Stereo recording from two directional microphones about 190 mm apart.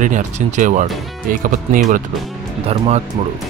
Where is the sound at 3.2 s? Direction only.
30° right (ahead or behind).